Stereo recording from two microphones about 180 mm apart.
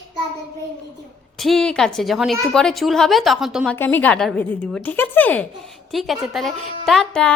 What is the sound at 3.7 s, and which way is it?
A woman's voice, 10° left (ahead or behind).